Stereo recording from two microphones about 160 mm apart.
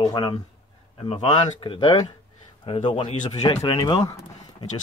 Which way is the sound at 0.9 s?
40° left (ahead or behind).